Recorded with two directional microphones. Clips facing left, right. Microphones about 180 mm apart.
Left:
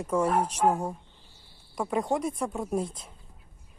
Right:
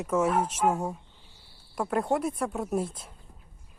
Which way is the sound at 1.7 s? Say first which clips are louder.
Right 1 dB; 5° right (ahead or behind).